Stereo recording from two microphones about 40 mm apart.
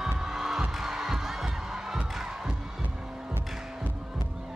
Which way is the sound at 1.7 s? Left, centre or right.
Centre.